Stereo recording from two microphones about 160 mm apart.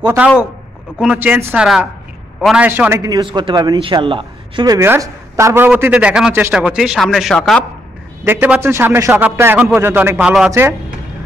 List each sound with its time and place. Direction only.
0.0 s a man's voice: 10° right (ahead or behind); by 4.7 s 30° right (ahead or behind)
4.7 s a man's voice: 20° right (ahead or behind); by 7.6 s 5° left (ahead or behind)
8.2 s a man's voice: 10° right (ahead or behind)